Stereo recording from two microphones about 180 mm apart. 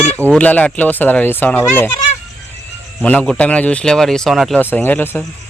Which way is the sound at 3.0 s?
5° left (ahead or behind).